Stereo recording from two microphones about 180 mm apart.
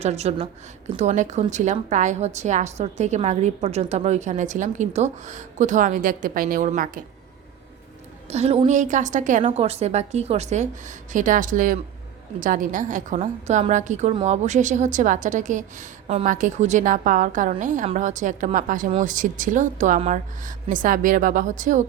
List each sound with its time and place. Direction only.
0.0 s a woman's voice: 35° right (ahead or behind)
8.3 s a woman's voice: 35° right (ahead or behind)